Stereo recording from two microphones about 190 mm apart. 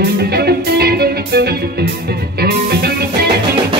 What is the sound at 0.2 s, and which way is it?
Music, 55° right (ahead or behind).